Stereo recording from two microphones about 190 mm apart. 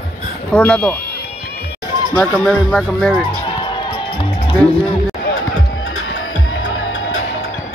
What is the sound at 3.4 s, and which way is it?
Music, 25° left (ahead or behind).